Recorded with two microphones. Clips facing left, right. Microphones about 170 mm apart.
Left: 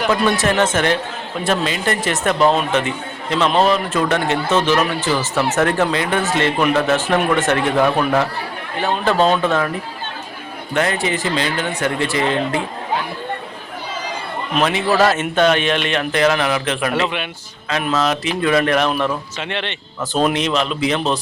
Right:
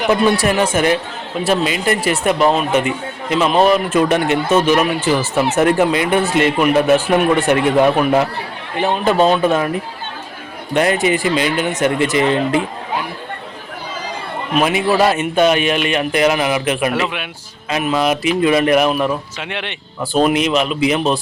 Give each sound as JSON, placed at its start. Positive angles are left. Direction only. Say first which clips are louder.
{"t": 0.4, "sound": "speech", "louder": "right 2 dB", "side_deg": -10}
{"t": 11.0, "sound": "speech", "louder": "right 4 dB", "side_deg": -15}
{"t": 14.5, "sound": "speech", "louder": "right 2 dB", "side_deg": -10}